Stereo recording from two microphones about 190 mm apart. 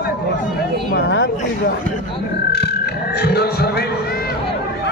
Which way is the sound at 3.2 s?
60° left (ahead or behind).